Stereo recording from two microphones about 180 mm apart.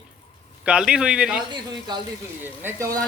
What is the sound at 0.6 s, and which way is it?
Speech, 5° right (ahead or behind).